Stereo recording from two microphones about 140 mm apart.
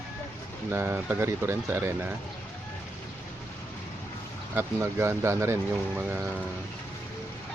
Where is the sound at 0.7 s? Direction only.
15° right (ahead or behind).